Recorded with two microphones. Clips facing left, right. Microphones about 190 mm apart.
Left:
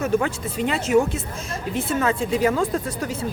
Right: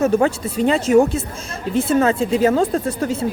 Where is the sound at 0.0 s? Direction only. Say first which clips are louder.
Right 6 dB; 35° right (ahead or behind).